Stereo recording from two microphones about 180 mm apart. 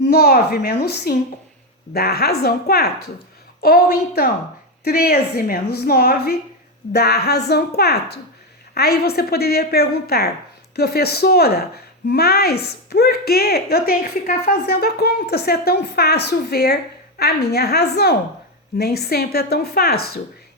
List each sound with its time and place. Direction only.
0.0 s a woman's voice: 60° left (ahead or behind)